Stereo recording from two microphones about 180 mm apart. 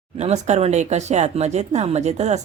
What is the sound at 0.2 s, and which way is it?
Speech, 40° right (ahead or behind).